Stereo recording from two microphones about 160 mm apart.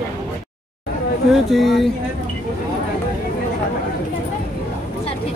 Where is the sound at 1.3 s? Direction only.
Centre (ahead or behind).